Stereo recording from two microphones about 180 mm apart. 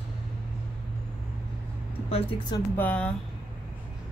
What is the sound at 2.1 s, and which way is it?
Speech, 30° left (ahead or behind).